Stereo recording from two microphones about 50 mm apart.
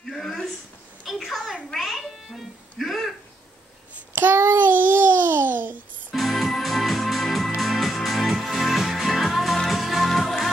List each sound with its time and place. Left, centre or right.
0.0 s a sound: centre
1.8 s music: centre
4.1 s child singing: right
4.4 s babbling: right
6.1 s music: centre